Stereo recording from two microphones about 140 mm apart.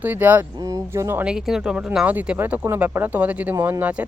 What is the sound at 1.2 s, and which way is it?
Speech, 5° right (ahead or behind).